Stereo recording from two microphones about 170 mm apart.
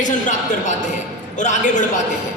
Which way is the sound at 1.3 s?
45° left (ahead or behind).